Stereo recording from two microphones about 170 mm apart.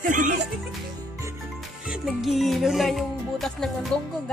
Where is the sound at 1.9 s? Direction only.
Centre (ahead or behind).